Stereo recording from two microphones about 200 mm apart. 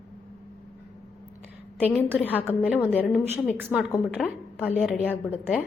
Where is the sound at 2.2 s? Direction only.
10° left (ahead or behind).